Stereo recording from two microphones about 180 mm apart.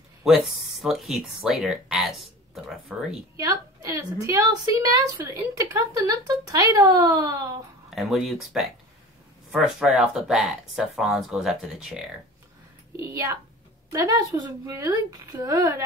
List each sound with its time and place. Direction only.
0.2 s speech: centre (ahead or behind)
3.3 s a woman's voice: 15° right (ahead or behind)
7.9 s speech: centre (ahead or behind)
12.9 s a woman's voice: 15° right (ahead or behind)